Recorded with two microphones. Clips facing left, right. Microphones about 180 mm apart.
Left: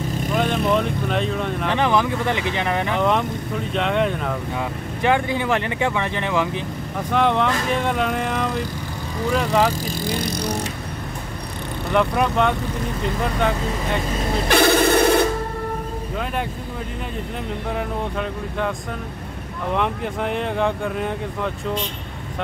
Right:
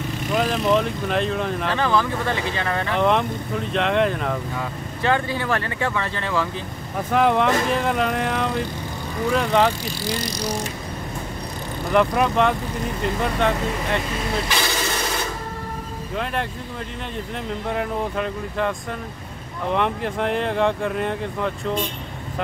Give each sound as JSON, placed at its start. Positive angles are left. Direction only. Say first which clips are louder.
{"t": 0.3, "sound": "vehicle", "louder": "even", "side_deg": 0}
{"t": 0.7, "sound": "speech", "louder": "even", "side_deg": 0}
{"t": 1.7, "sound": "speech", "louder": "left 3 dB", "side_deg": 20}
{"t": 3.0, "sound": "speech", "louder": "even", "side_deg": 0}
{"t": 4.6, "sound": "speech", "louder": "left 3 dB", "side_deg": 15}
{"t": 7.1, "sound": "speech", "louder": "right 1 dB", "side_deg": -5}
{"t": 9.8, "sound": "speech", "louder": "left 2 dB", "side_deg": 50}
{"t": 11.9, "sound": "speech", "louder": "right 1 dB", "side_deg": 0}
{"t": 14.5, "sound": "a sound", "louder": "left 9 dB", "side_deg": 60}
{"t": 17.6, "sound": "speech", "louder": "right 2 dB", "side_deg": 0}
{"t": 19.7, "sound": "speech", "louder": "right 1 dB", "side_deg": 0}